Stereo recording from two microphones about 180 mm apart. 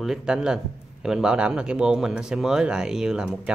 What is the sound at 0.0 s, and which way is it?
Speech, 5° right (ahead or behind).